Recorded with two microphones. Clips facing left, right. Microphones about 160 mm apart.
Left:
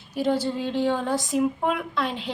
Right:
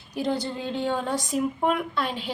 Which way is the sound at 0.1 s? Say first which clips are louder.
Left 3 dB; 5° left (ahead or behind).